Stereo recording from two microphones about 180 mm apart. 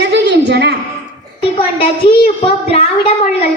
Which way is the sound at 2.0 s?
25° left (ahead or behind).